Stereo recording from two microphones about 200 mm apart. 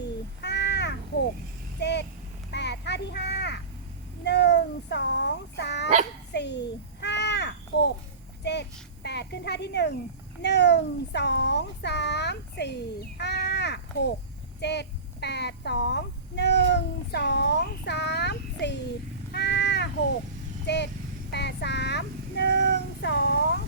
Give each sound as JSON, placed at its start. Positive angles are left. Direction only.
{"t": 0.4, "sound": "crow", "side_deg": 60}
{"t": 1.8, "sound": "a sound", "side_deg": 60}
{"t": 4.2, "sound": "dog", "side_deg": 60}
{"t": 6.3, "sound": "crow", "side_deg": 60}
{"t": 8.4, "sound": "child singing", "side_deg": 60}
{"t": 9.0, "sound": "a sound", "side_deg": 55}
{"t": 14.6, "sound": "child singing", "side_deg": 60}
{"t": 19.3, "sound": "cat", "side_deg": 55}
{"t": 20.7, "sound": "a sound", "side_deg": 60}